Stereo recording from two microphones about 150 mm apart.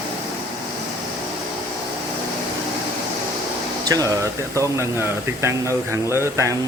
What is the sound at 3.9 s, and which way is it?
Speech, 25° right (ahead or behind).